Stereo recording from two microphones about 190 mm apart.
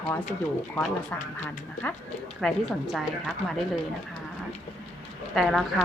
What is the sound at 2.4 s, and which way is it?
Speech, centre (ahead or behind).